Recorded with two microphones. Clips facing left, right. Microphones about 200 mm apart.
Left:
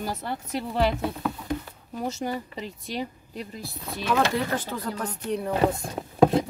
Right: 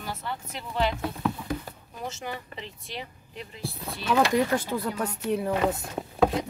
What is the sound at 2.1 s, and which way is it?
A woman's voice, 40° left (ahead or behind).